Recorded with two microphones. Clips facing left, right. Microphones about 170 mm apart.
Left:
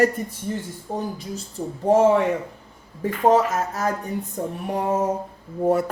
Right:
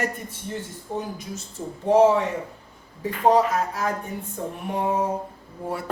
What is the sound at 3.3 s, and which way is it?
Speech, 45° left (ahead or behind).